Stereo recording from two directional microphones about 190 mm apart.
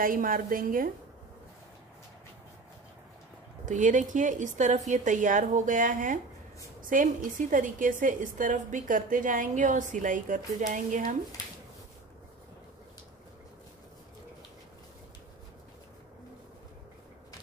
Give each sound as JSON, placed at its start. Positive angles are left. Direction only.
{"t": 0.0, "sound": "a woman's voice", "side_deg": -45}
{"t": 3.6, "sound": "a woman's voice", "side_deg": -40}